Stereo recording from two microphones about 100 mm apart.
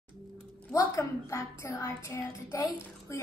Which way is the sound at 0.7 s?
30° left (ahead or behind).